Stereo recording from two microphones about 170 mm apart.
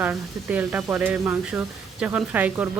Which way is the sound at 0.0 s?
10° right (ahead or behind).